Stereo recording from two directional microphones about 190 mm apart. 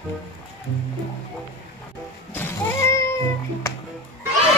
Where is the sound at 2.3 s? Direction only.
15° left (ahead or behind).